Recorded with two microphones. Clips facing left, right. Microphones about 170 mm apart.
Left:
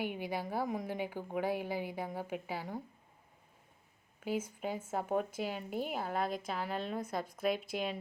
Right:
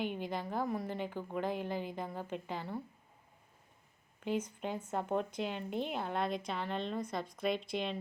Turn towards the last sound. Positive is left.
turn(degrees=5)  # may be behind; listen again after turning